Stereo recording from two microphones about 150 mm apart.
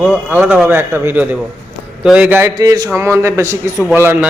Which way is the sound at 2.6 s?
25° right (ahead or behind).